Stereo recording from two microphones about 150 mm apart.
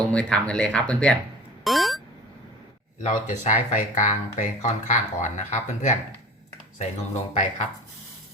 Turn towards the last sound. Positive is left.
turn(degrees=50)  # may be behind; listen again after turning